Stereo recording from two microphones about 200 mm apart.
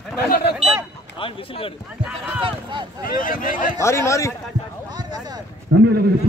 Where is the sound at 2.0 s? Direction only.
5° right (ahead or behind).